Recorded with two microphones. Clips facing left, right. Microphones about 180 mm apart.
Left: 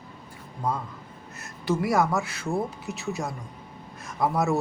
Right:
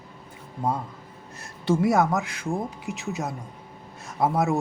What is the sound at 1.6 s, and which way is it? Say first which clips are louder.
Speech: right 3 dB; 25° right (ahead or behind).